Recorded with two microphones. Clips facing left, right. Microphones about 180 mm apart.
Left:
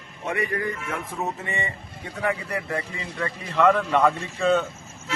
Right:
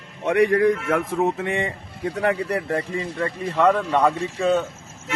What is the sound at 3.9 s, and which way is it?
Speech, 20° right (ahead or behind).